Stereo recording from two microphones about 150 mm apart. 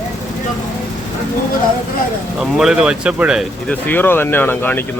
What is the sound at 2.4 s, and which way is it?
Speech, 5° right (ahead or behind).